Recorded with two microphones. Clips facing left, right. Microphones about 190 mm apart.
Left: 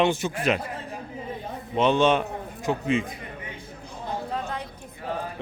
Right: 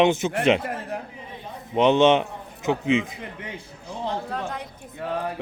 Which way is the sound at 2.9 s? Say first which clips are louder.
Right 3 dB; 85° right.